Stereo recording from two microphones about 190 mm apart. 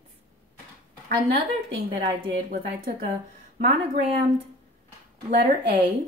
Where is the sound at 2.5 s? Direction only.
45° right (ahead or behind).